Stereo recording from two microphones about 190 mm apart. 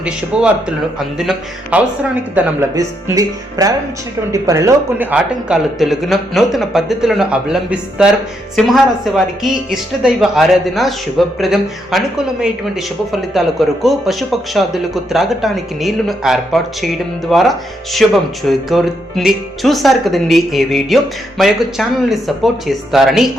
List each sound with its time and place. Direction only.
0.3 s speech: 5° right (ahead or behind)
2.3 s speech: 15° right (ahead or behind)